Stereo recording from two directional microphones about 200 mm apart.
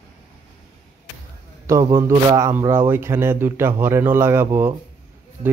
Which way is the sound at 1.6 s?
15° right (ahead or behind).